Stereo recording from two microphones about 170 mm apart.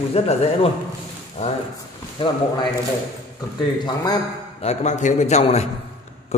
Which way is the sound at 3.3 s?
25° left (ahead or behind).